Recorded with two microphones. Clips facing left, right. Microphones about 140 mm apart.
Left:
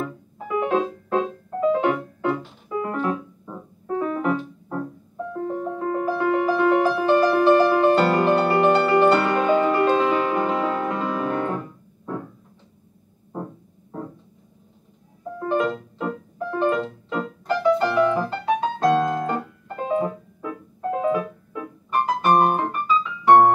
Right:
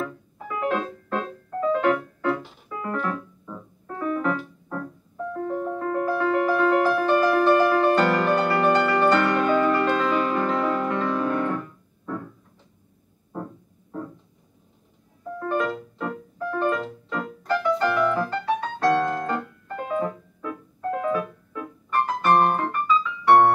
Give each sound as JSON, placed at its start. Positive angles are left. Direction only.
{"t": 0.0, "sound": "music", "side_deg": 20}
{"t": 4.2, "sound": "piano", "side_deg": 20}
{"t": 5.9, "sound": "music", "side_deg": 20}
{"t": 15.3, "sound": "music", "side_deg": 15}